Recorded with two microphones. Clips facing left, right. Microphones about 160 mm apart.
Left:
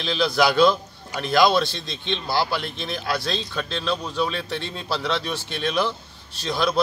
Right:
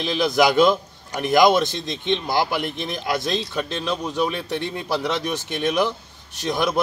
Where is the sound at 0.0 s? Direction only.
15° right (ahead or behind).